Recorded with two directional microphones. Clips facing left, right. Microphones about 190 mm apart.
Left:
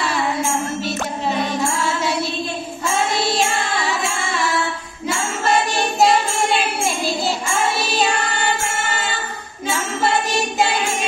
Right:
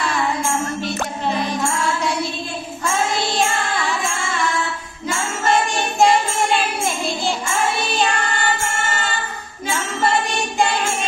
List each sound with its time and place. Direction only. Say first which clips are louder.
3.3 s music: left 1 dB; centre (ahead or behind)
5.1 s music: even; centre (ahead or behind)